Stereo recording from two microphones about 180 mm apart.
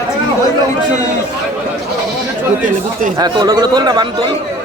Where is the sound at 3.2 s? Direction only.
20° right (ahead or behind).